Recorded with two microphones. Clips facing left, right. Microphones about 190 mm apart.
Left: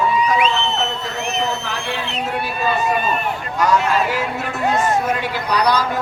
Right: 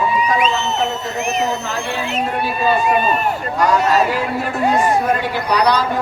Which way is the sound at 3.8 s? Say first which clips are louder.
Right 3 dB; 40° right (ahead or behind).